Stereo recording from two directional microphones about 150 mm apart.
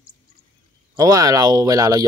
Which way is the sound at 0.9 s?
25° right (ahead or behind).